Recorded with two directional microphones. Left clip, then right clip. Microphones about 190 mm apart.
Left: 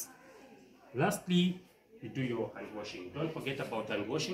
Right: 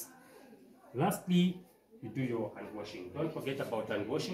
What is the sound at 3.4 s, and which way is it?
Speech, 25° right (ahead or behind).